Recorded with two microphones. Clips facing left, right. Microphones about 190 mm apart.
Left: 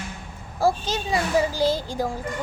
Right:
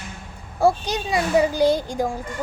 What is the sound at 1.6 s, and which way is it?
Speech, 15° right (ahead or behind).